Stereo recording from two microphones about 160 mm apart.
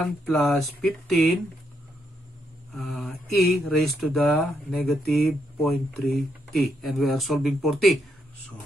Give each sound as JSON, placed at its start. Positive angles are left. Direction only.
{"t": 0.0, "sound": "speech", "side_deg": 0}
{"t": 2.7, "sound": "speech", "side_deg": 0}